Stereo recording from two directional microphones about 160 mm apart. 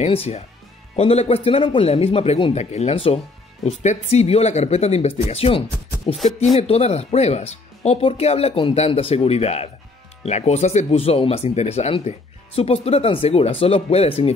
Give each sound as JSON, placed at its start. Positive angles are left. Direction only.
{"t": 0.0, "sound": "speech", "side_deg": 40}
{"t": 6.1, "sound": "speech", "side_deg": 0}
{"t": 6.5, "sound": "speech", "side_deg": 40}